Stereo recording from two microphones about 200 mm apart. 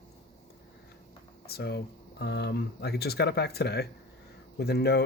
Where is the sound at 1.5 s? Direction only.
55° left (ahead or behind).